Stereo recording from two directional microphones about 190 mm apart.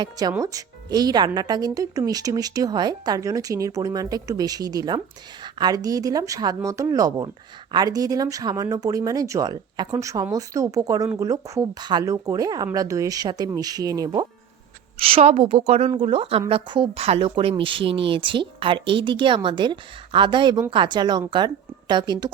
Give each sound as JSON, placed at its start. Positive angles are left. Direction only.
{"t": 0.0, "sound": "speech", "side_deg": -20}
{"t": 14.9, "sound": "a woman's voice", "side_deg": -30}